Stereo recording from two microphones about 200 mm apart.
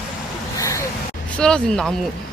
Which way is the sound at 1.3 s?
5° left (ahead or behind).